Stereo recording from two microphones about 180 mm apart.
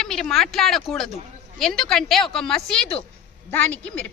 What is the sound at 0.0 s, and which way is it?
A woman's voice, centre (ahead or behind).